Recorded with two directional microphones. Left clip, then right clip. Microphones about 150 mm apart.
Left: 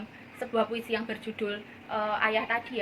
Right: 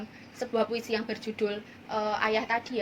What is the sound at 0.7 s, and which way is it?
A woman's voice, 60° right (ahead or behind).